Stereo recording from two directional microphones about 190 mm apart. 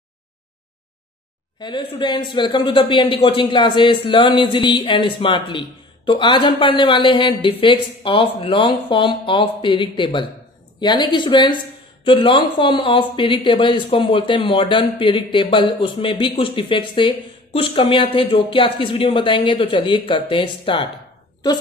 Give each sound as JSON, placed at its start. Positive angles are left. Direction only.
{"t": 1.6, "sound": "speech", "side_deg": 25}